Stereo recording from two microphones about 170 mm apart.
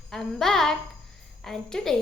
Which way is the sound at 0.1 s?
Centre (ahead or behind).